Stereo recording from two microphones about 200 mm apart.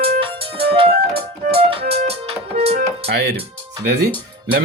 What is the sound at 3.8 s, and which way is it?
Speech, 60° right (ahead or behind).